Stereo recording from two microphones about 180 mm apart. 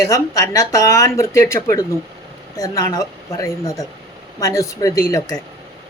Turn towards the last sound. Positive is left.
turn(degrees=20)  # may be behind; listen again after turning